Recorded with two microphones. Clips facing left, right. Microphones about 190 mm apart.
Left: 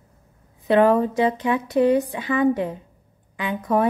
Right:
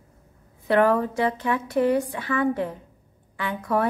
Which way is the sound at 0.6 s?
20° left (ahead or behind).